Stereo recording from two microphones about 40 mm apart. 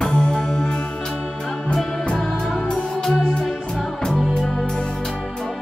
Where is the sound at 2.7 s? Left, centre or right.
Centre.